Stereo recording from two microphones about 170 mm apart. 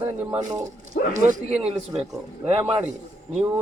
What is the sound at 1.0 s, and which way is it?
Speech, 60° left (ahead or behind).